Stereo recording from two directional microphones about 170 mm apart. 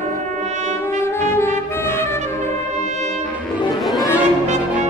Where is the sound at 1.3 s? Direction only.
15° left (ahead or behind).